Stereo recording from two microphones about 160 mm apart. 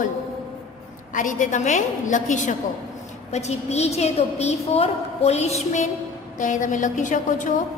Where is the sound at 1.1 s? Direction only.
50° left (ahead or behind).